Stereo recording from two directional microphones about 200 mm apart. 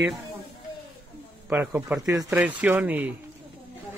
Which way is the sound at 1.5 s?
10° right (ahead or behind).